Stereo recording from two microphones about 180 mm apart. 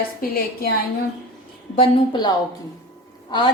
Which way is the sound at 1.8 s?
25° left (ahead or behind).